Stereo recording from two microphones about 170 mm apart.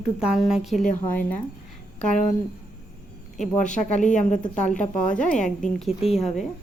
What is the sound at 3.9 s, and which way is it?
Speech, 45° left (ahead or behind).